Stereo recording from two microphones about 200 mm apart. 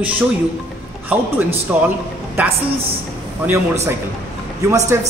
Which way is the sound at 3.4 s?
15° right (ahead or behind).